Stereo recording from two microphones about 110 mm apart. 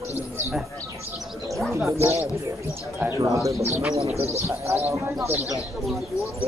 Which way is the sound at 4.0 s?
70° right (ahead or behind).